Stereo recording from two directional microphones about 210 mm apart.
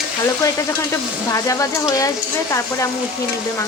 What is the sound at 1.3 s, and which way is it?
Speech, 15° left (ahead or behind).